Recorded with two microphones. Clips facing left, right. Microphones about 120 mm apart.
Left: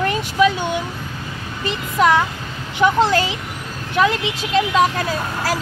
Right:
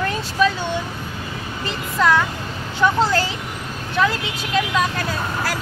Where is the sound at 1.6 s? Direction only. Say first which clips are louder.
Left 3 dB; 20° left (ahead or behind).